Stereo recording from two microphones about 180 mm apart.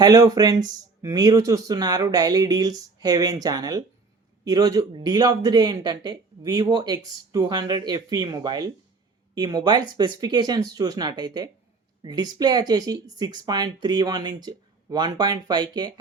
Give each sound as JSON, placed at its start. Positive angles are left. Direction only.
{"t": 0.0, "sound": "speech", "side_deg": -20}